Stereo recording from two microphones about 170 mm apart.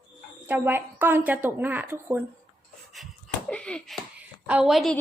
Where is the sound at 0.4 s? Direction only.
10° right (ahead or behind).